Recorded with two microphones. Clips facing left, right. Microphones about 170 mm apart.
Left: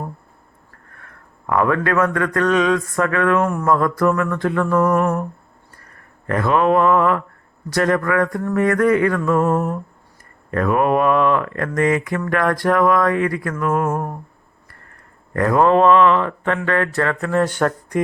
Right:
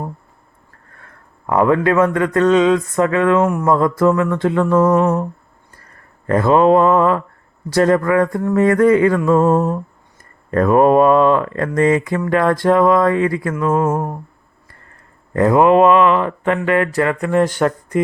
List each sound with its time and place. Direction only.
1.5 s speech: 25° right (ahead or behind)
3.4 s speech: 10° right (ahead or behind)
3.7 s speech: 25° right (ahead or behind)
6.2 s speech: 30° right (ahead or behind)
15.3 s speech: 20° right (ahead or behind)